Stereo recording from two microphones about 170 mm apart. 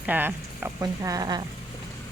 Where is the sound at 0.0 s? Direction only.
10° right (ahead or behind).